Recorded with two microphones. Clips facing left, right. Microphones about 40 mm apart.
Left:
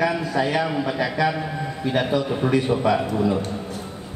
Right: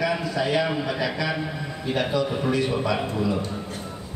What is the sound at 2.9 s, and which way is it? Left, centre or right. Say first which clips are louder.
Speech: left 4 dB; left.